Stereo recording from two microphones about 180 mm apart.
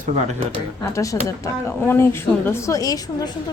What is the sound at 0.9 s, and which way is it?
A woman's voice, 20° left (ahead or behind).